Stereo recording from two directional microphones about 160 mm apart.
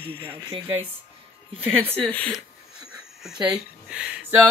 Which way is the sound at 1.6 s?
35° right (ahead or behind).